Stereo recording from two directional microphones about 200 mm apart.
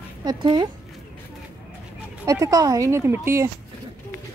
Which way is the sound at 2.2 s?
15° right (ahead or behind).